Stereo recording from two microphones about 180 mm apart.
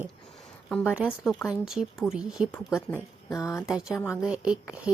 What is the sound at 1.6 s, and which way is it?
Speech, centre (ahead or behind).